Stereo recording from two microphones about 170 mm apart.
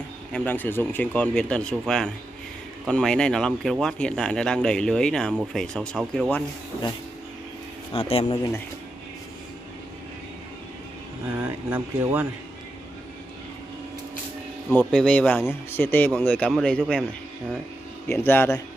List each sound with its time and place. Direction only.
0.3 s speech: 10° left (ahead or behind)
7.9 s speech: 35° left (ahead or behind)
11.4 s speech: 10° right (ahead or behind)
14.7 s speech: 5° left (ahead or behind)
18.0 s speech: 10° left (ahead or behind)